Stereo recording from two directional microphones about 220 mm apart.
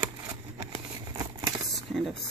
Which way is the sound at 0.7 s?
15° right (ahead or behind).